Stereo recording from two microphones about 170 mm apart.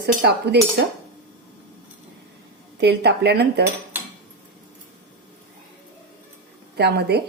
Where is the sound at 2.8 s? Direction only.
75° right (ahead or behind).